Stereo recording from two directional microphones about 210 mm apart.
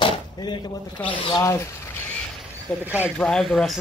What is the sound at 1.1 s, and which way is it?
Speech, 25° left (ahead or behind).